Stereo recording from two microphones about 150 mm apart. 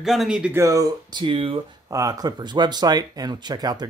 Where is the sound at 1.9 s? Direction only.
25° right (ahead or behind).